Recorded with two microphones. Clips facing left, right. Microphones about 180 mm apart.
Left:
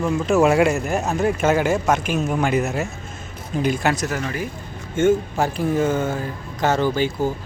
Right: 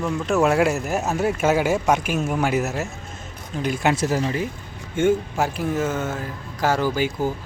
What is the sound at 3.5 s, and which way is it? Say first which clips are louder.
Speech: left 4 dB; 10° left (ahead or behind).